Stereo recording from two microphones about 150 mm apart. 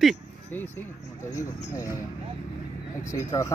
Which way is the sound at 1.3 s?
20° left (ahead or behind).